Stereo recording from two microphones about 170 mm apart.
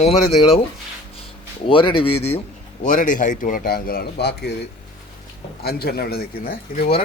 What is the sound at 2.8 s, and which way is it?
Speech, 50° left (ahead or behind).